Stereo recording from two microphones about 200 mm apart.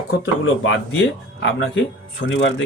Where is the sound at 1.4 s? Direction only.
60° left (ahead or behind).